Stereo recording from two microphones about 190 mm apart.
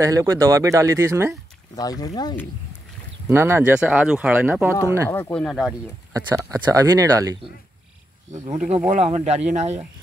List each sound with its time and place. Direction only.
0.0 s speech: 15° right (ahead or behind)
1.8 s speech: 20° left (ahead or behind)
3.3 s speech: 15° right (ahead or behind)
5.1 s speech: 10° left (ahead or behind)
6.1 s speech: 20° right (ahead or behind)
8.3 s speech: 35° right (ahead or behind)